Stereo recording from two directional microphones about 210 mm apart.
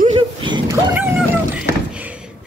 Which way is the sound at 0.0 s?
25° right (ahead or behind).